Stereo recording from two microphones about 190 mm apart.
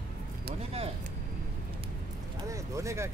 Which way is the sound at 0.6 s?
35° right (ahead or behind).